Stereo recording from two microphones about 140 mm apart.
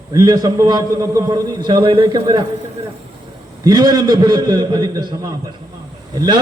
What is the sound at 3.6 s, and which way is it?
A man's voice, 30° right (ahead or behind).